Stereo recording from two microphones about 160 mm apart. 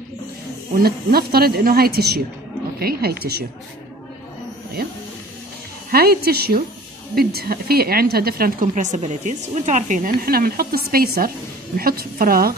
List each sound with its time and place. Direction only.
0.7 s a woman's voice: 70° right (ahead or behind)
5.9 s a woman's voice: 75° right (ahead or behind)